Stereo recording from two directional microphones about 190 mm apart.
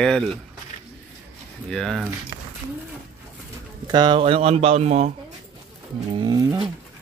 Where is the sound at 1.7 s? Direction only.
5° left (ahead or behind).